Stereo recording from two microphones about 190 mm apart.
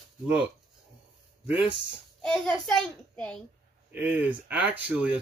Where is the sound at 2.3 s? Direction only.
Centre (ahead or behind).